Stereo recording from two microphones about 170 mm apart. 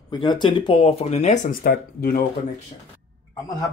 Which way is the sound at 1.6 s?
60° left (ahead or behind).